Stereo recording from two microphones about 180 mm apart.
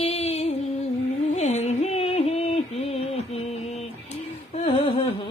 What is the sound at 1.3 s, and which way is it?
Music, 40° left (ahead or behind).